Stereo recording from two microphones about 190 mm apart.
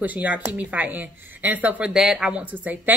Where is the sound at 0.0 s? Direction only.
10° right (ahead or behind).